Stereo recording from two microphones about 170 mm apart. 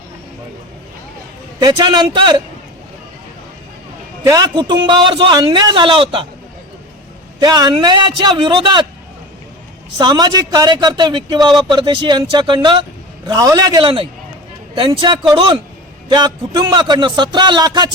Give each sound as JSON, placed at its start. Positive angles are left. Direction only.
{"t": 1.5, "sound": "a man's voice", "side_deg": -25}
{"t": 4.3, "sound": "a man's voice", "side_deg": -25}
{"t": 7.3, "sound": "a man's voice", "side_deg": -25}
{"t": 10.0, "sound": "a man's voice", "side_deg": -25}